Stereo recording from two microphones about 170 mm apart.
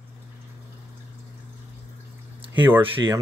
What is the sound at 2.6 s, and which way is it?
Speech, 10° right (ahead or behind).